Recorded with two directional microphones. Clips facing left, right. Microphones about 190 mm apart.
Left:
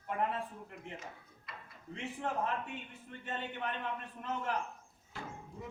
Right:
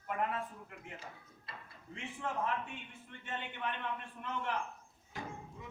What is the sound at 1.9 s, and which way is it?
A man's voice, 35° left (ahead or behind).